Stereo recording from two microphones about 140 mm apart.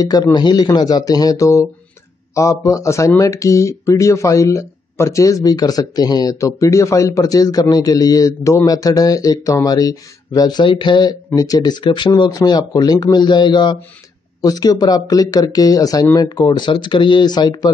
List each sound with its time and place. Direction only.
0.0 s speech: 30° left (ahead or behind)